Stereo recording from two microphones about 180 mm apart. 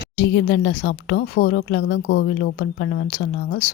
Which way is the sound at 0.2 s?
70° left (ahead or behind).